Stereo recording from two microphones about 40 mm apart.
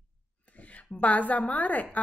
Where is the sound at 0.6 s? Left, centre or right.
Left.